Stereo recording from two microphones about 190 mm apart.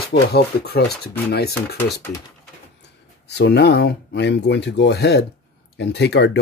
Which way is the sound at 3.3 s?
65° left (ahead or behind).